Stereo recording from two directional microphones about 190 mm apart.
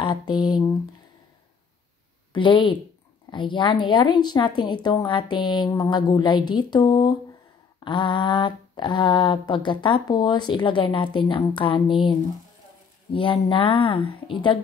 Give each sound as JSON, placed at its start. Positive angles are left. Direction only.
{"t": 0.0, "sound": "speech", "side_deg": 20}
{"t": 2.3, "sound": "speech", "side_deg": 25}